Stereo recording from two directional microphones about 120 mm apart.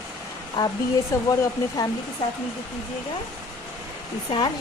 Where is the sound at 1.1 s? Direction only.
25° left (ahead or behind).